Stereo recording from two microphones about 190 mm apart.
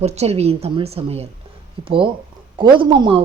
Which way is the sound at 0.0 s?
35° right (ahead or behind).